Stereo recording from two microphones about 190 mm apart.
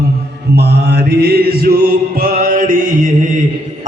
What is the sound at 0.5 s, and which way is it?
Mantra, 60° right (ahead or behind).